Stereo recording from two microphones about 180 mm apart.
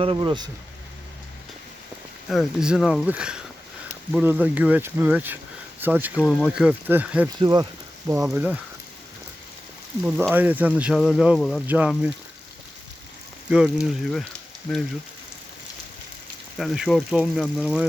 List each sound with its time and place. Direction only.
0.0 s speech: 30° right (ahead or behind)
2.3 s speech: centre (ahead or behind)
7.3 s speech: 25° right (ahead or behind)
8.0 s speech: 5° right (ahead or behind)
10.0 s speech: 5° right (ahead or behind)
11.6 s speech: 10° right (ahead or behind)
13.5 s speech: 5° right (ahead or behind)
16.6 s speech: centre (ahead or behind)